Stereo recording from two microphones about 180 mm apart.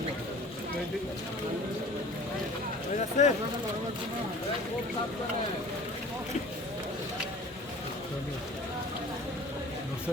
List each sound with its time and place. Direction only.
3.2 s speech: 40° left (ahead or behind)